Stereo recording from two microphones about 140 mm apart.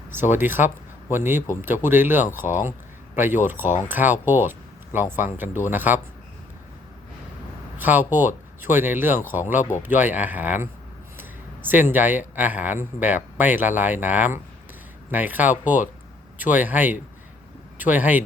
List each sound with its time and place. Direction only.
0.1 s speech: 15° right (ahead or behind)
5.7 s speech: 15° right (ahead or behind)
7.8 s speech: 15° right (ahead or behind)